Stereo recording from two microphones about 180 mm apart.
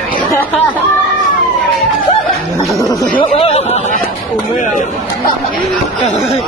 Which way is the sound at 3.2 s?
30° left (ahead or behind).